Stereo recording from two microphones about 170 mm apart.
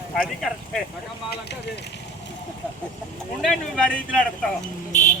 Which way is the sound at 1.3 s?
80° left.